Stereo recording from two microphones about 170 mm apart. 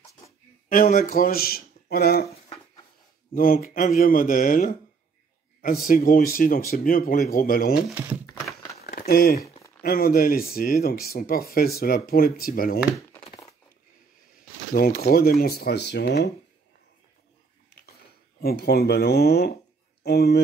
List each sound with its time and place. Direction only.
0.7 s speech: 55° left (ahead or behind)
3.3 s speech: 55° left (ahead or behind)
7.9 s speech: 15° right (ahead or behind)
8.8 s a sound: 65° left (ahead or behind)
9.8 s speech: 60° left (ahead or behind)
14.7 s speech: 60° left (ahead or behind); by 16.3 s 80° left
18.4 s speech: 70° left (ahead or behind)